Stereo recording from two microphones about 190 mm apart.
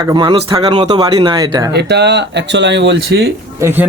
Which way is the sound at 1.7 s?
60° right (ahead or behind).